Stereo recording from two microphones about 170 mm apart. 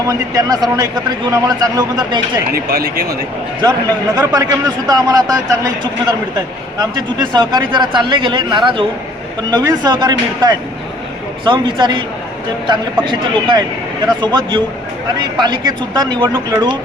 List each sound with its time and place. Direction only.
0.1 s a man's voice: 20° right (ahead or behind)
2.5 s speech: 65° right (ahead or behind)
3.6 s a man's voice: 25° right (ahead or behind)
14.2 s a man's voice: 25° right (ahead or behind)